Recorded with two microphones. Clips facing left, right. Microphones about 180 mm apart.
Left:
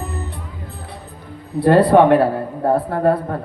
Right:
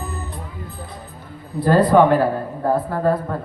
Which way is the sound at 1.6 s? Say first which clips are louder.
Left 3 dB; 65° left (ahead or behind).